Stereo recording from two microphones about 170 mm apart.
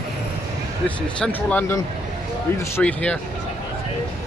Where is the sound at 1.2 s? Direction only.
10° left (ahead or behind).